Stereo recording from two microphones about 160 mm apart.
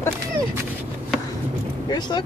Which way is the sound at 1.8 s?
25° left (ahead or behind).